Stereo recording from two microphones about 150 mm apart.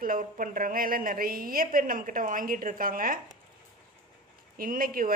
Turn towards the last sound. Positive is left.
turn(degrees=-70)  # may be behind; listen again after turning